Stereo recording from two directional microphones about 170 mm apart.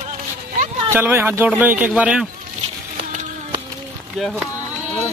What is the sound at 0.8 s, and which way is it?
Speech, 15° right (ahead or behind).